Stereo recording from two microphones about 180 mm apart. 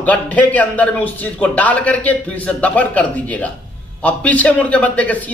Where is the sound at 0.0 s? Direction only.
10° left (ahead or behind).